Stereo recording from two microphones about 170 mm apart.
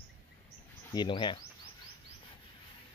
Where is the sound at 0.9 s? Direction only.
25° left (ahead or behind).